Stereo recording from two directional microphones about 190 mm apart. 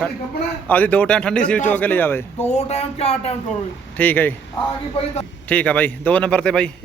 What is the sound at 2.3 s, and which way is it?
Speech, 35° left (ahead or behind).